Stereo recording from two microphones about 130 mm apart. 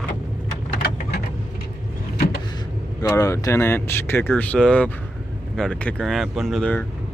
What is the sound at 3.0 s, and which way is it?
Speech, 25° left (ahead or behind).